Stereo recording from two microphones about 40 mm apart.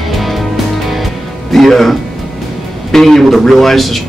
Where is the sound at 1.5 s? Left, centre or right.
Centre.